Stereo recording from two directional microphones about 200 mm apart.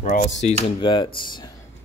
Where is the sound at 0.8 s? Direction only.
25° left (ahead or behind).